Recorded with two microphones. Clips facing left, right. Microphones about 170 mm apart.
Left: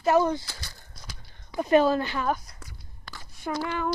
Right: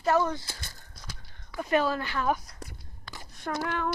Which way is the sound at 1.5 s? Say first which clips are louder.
Left 6 dB; 25° left (ahead or behind).